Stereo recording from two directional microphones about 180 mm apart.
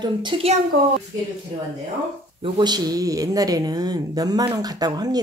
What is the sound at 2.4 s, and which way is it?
A woman's voice, 25° right (ahead or behind).